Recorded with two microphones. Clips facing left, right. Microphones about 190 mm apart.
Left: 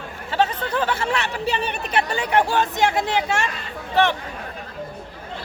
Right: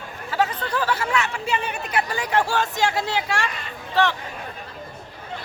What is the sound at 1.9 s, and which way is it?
Speech, 25° left (ahead or behind).